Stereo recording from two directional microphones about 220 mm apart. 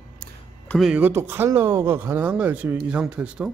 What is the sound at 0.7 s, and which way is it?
Speech, centre (ahead or behind).